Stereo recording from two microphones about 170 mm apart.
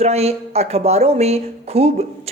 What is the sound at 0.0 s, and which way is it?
Speech, 40° right (ahead or behind).